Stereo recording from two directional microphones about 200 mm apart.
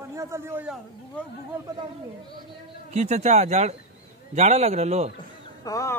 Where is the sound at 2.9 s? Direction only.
35° right (ahead or behind).